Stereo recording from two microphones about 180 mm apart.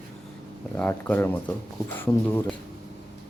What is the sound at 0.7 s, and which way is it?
Speech, 10° left (ahead or behind).